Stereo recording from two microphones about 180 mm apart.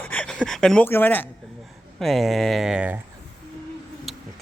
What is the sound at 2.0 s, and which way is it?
Speech, centre (ahead or behind).